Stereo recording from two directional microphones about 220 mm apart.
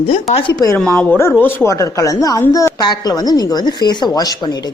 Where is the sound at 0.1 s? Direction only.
30° left (ahead or behind).